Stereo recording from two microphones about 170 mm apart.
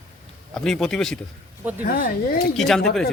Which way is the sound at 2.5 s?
Centre (ahead or behind).